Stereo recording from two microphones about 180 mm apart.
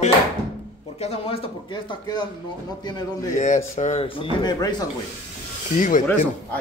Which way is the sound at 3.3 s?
45° left (ahead or behind).